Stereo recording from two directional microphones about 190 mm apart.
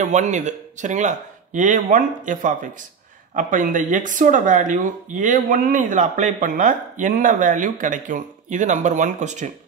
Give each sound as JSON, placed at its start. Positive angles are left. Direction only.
{"t": 0.0, "sound": "speech", "side_deg": -40}